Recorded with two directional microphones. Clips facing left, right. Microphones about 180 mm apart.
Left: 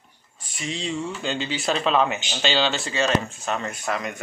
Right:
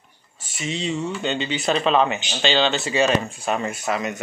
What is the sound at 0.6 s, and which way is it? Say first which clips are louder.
Speech: right 3 dB; 5° right (ahead or behind).